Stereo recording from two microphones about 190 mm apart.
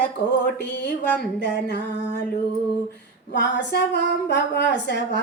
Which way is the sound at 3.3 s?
65° left (ahead or behind).